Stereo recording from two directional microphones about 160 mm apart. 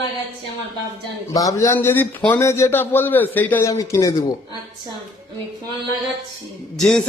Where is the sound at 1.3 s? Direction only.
20° left (ahead or behind).